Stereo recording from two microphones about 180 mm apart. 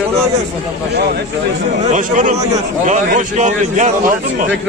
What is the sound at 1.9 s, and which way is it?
A man's voice, 45° right (ahead or behind).